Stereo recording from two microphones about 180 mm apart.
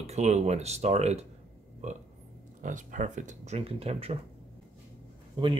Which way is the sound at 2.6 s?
45° right (ahead or behind).